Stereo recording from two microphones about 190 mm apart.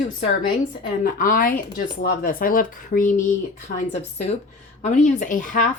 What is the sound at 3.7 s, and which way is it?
Speech, 55° left (ahead or behind).